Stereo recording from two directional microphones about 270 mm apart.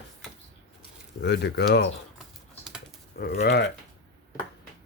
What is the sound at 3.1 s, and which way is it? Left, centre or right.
Speech, left.